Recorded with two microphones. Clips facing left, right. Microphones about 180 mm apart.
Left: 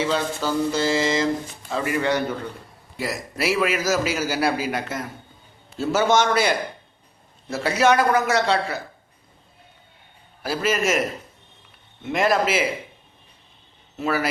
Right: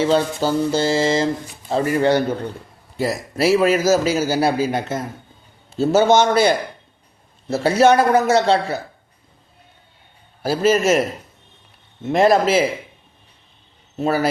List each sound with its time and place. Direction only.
0.0 s mantra: 30° right (ahead or behind)
3.0 s a man's voice: 30° right (ahead or behind)
7.5 s a man's voice: 30° right (ahead or behind)
10.4 s mantra: 30° right (ahead or behind)
12.0 s mantra: 30° right (ahead or behind)
14.0 s mantra: 30° right (ahead or behind)